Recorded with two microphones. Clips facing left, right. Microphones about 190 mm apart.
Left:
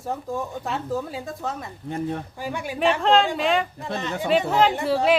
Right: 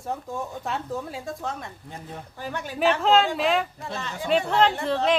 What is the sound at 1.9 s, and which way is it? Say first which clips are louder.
Speech: left 16 dB; 65° left (ahead or behind).